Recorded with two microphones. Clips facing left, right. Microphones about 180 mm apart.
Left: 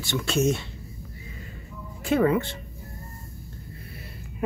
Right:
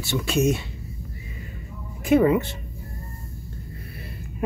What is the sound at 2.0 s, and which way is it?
Speech, 15° right (ahead or behind).